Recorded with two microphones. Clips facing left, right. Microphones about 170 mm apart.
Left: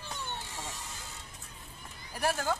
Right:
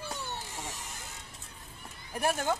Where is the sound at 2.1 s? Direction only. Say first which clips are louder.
Right 1 dB; 20° right (ahead or behind).